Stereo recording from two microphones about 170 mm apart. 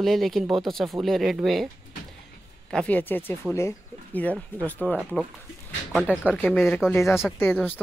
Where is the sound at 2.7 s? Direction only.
5° left (ahead or behind).